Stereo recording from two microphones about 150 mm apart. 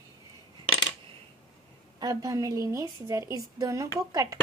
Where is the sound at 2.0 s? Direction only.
25° right (ahead or behind).